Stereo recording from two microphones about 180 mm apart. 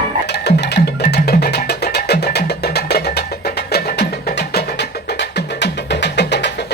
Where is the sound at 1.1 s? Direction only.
65° left (ahead or behind).